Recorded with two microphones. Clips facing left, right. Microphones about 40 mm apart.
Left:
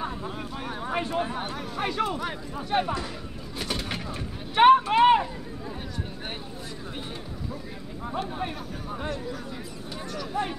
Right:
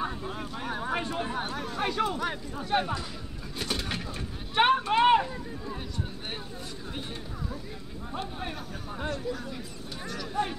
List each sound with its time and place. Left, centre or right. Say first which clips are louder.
0.4 s a sound: even; centre
1.5 s speech: left 1 dB; centre
9.0 s speech: right 2 dB; centre